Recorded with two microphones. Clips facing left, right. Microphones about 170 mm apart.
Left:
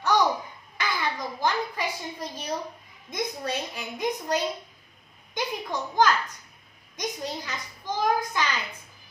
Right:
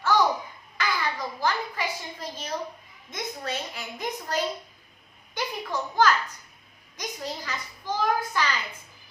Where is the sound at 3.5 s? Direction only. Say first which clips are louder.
Left 2 dB; 15° left (ahead or behind).